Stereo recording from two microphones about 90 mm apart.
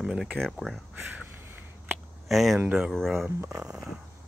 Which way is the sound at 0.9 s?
20° right (ahead or behind).